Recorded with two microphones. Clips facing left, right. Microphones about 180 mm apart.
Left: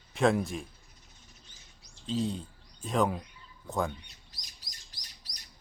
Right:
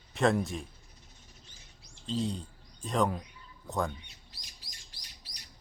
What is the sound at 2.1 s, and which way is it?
Speech, centre (ahead or behind).